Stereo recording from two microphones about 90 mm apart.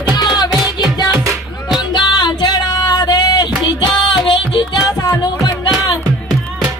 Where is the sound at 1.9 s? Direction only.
50° left (ahead or behind).